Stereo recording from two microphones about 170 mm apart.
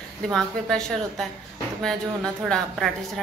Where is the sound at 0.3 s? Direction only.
5° left (ahead or behind).